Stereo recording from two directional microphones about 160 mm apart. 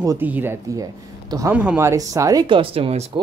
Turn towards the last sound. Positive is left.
turn(degrees=-40)  # may be behind; listen again after turning